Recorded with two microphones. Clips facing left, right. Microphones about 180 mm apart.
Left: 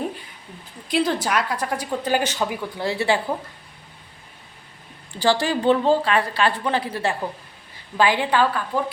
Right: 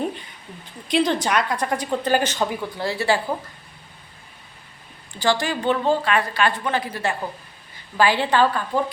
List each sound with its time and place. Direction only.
0.9 s a woman's voice: 5° left (ahead or behind)
2.8 s a woman's voice: 20° left (ahead or behind)
5.2 s a woman's voice: 35° left (ahead or behind)
7.9 s a woman's voice: 20° left (ahead or behind)